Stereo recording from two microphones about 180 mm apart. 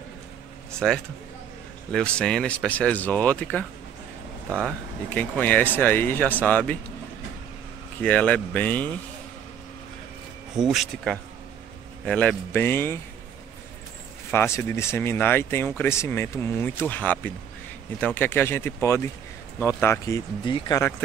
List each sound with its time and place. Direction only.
0.7 s speech: 5° left (ahead or behind)
8.0 s speech: 5° left (ahead or behind)
10.5 s speech: 5° right (ahead or behind); by 13.0 s 15° left (ahead or behind)
14.3 s speech: 15° left (ahead or behind)